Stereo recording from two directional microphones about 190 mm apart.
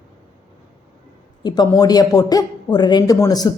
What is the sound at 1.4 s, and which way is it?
Speech, 20° left (ahead or behind).